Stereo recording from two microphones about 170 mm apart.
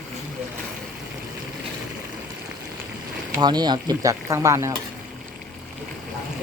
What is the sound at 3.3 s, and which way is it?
Speech, 25° right (ahead or behind).